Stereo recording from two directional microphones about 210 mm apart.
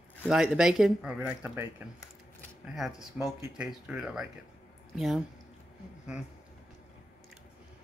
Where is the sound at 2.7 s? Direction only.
Centre (ahead or behind).